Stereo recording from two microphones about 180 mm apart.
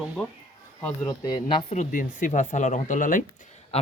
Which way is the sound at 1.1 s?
25° left (ahead or behind).